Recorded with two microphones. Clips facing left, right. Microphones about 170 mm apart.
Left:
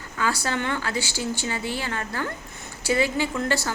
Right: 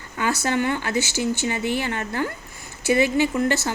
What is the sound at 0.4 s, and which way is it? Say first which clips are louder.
A woman's voice: right 4 dB; 15° right (ahead or behind).